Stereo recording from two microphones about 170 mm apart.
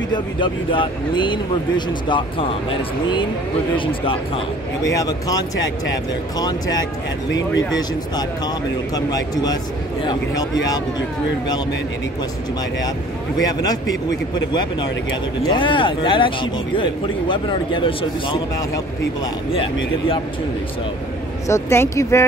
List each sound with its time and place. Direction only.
0.1 s speech: 30° left (ahead or behind)
3.7 s a man's voice: 30° left (ahead or behind)
4.8 s speech: 20° left (ahead or behind)
13.5 s speech: 20° left (ahead or behind)
19.5 s a man's voice: 30° left (ahead or behind)
21.5 s speech: 15° left (ahead or behind)